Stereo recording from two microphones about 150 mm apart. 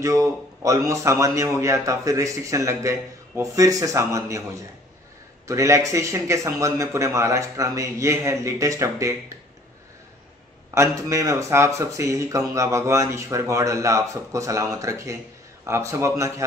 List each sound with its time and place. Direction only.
0.0 s a man's voice: 20° right (ahead or behind)
10.7 s a man's voice: 20° right (ahead or behind)